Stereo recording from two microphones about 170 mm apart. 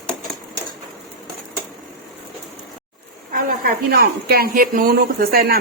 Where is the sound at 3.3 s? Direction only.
60° right (ahead or behind).